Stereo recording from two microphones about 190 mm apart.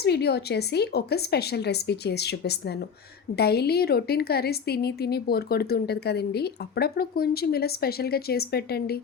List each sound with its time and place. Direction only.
0.0 s a woman's voice: 60° left (ahead or behind)